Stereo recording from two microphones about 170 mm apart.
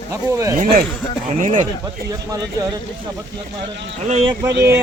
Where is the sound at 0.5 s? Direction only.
55° right (ahead or behind).